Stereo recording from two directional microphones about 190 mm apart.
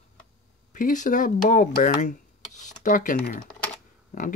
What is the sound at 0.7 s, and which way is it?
Speech, 40° left (ahead or behind).